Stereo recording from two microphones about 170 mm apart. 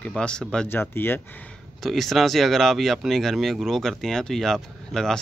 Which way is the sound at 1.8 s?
Centre (ahead or behind).